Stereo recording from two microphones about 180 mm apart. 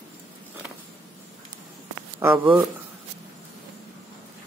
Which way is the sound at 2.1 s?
15° right (ahead or behind).